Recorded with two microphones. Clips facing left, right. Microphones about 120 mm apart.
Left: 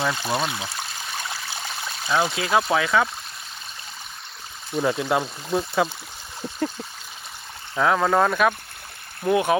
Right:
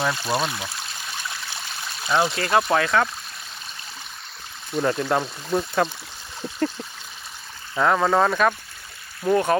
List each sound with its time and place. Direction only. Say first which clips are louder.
0.0 s speech: right 1 dB; 5° right (ahead or behind)
2.0 s speech: right 1 dB; centre (ahead or behind)
4.7 s speech: even; 5° left (ahead or behind)
7.8 s speech: even; centre (ahead or behind)